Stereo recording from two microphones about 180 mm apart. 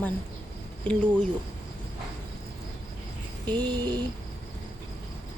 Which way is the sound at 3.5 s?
25° right (ahead or behind).